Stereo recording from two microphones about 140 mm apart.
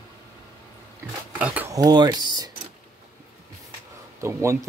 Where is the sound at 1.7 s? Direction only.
25° right (ahead or behind).